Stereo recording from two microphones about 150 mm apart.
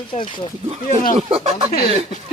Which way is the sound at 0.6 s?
45° right (ahead or behind).